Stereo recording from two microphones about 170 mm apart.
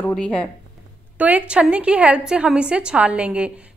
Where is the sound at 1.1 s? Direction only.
10° right (ahead or behind).